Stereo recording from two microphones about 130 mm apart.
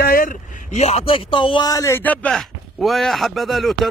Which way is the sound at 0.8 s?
50° left (ahead or behind).